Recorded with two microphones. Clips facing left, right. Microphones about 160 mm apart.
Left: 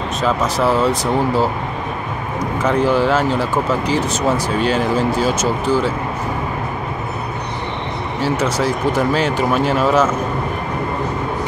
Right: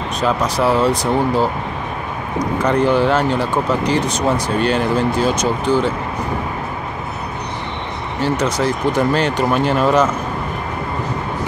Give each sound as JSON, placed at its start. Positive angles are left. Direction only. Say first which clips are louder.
{"t": 0.2, "sound": "speech", "louder": "even", "side_deg": 5}
{"t": 2.6, "sound": "speech", "louder": "even", "side_deg": 5}
{"t": 8.2, "sound": "speech", "louder": "right 1 dB", "side_deg": 5}